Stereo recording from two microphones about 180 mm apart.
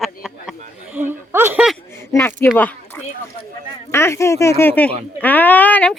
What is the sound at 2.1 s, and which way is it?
Speech, 15° left (ahead or behind).